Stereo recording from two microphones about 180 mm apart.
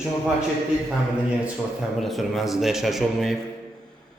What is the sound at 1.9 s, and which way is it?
A man's voice, centre (ahead or behind).